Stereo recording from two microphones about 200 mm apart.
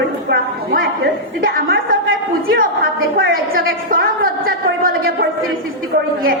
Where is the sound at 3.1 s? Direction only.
45° right (ahead or behind).